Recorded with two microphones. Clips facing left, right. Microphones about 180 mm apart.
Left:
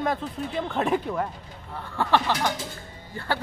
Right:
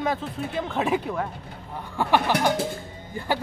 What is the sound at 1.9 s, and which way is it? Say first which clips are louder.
Speech: right 2 dB; 15° right (ahead or behind).